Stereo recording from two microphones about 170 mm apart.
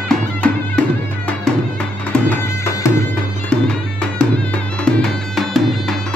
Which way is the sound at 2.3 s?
15° left (ahead or behind).